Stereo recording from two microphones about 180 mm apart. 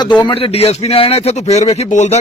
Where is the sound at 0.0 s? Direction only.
25° left (ahead or behind).